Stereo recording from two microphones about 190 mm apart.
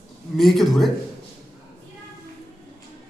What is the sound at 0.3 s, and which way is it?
Speech, centre (ahead or behind).